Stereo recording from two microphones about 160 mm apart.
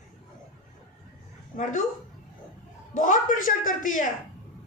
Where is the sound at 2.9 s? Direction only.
55° left (ahead or behind).